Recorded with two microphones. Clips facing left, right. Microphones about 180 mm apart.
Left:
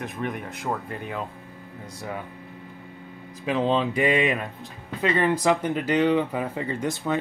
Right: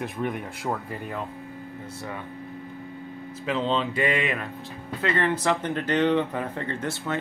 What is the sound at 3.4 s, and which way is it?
Speech, 15° left (ahead or behind).